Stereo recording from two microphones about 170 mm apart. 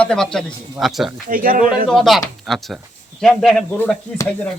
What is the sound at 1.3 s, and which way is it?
Speech, 55° right (ahead or behind).